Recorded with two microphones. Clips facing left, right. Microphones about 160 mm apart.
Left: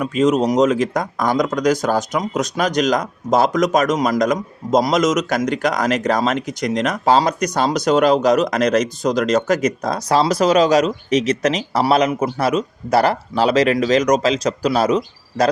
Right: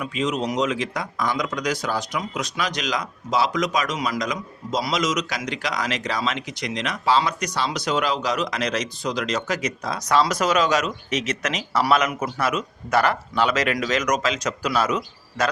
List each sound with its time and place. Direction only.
0.0 s speech: 45° left (ahead or behind)
10.0 s speech: 30° left (ahead or behind)